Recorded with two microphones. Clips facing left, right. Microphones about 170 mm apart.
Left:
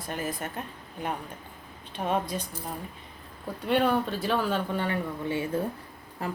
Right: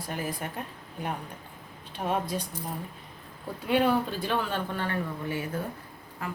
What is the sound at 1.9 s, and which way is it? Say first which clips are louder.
Speech: left 1 dB; 10° right (ahead or behind).